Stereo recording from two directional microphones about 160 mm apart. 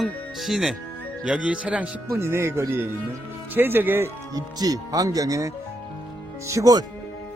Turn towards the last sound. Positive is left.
turn(degrees=-20)  # may be behind; listen again after turning